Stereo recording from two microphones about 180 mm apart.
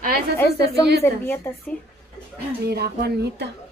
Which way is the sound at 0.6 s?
65° right (ahead or behind).